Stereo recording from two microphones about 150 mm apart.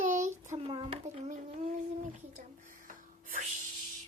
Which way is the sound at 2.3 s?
60° right (ahead or behind).